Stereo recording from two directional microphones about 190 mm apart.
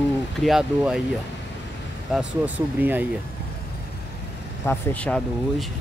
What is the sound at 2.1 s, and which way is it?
Speech, 5° right (ahead or behind).